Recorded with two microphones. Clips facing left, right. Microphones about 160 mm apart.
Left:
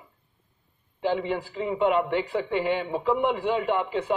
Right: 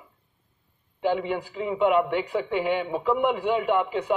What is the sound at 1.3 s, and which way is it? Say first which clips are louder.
A man's voice: even; 5° right (ahead or behind).